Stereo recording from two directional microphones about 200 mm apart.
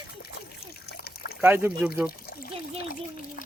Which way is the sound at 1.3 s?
10° right (ahead or behind).